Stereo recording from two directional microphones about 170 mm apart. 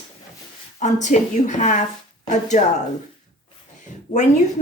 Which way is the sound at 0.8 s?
45° left (ahead or behind).